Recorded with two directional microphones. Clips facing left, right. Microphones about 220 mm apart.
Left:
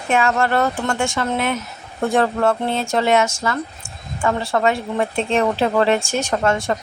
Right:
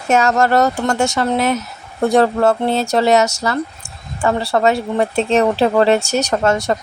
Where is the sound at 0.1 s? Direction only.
40° right (ahead or behind).